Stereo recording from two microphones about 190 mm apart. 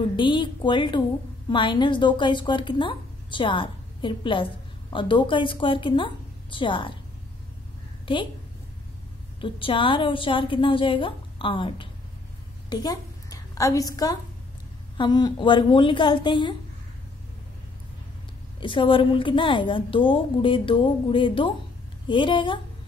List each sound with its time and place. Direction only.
0.1 s a woman's voice: 25° left (ahead or behind)
9.4 s a woman's voice: 25° left (ahead or behind)
18.6 s a woman's voice: 25° left (ahead or behind)